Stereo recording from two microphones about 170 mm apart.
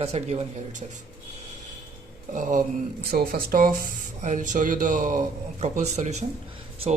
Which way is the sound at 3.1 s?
60° right (ahead or behind).